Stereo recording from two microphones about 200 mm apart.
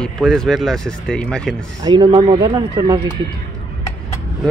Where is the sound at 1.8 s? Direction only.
25° right (ahead or behind).